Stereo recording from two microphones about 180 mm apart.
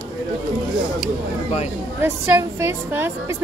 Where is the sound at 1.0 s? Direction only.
35° left (ahead or behind).